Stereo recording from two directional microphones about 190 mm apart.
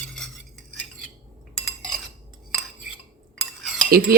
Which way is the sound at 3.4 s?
Centre (ahead or behind).